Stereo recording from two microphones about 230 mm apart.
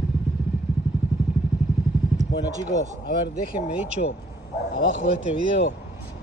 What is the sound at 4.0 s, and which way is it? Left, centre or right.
Speech, left.